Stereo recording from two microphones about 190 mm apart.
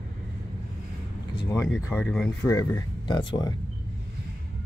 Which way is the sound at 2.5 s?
20° left (ahead or behind).